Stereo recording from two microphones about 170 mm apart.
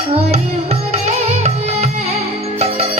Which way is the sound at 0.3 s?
40° right (ahead or behind).